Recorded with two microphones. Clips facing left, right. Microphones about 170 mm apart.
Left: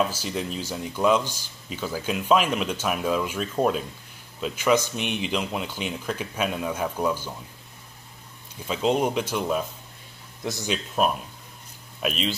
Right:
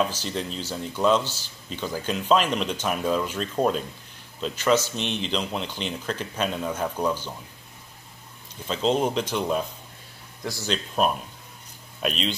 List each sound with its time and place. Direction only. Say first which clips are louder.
0.0 s speech: even; 10° left (ahead or behind)
8.6 s speech: even; 10° left (ahead or behind)
10.4 s speech: left 2 dB; 20° left (ahead or behind)
11.0 s speech: even; 5° left (ahead or behind)